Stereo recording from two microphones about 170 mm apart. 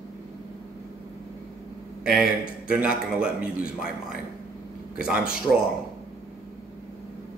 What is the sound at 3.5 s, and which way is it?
Speech, 60° left (ahead or behind).